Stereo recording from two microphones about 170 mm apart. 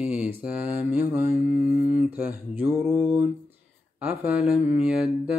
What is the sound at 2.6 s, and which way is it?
Mantra, 10° right (ahead or behind).